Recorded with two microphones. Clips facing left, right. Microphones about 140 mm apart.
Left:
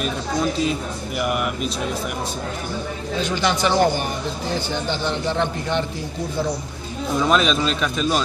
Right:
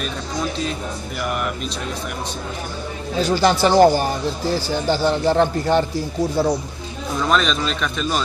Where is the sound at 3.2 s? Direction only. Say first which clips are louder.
Right 5 dB; 40° right (ahead or behind).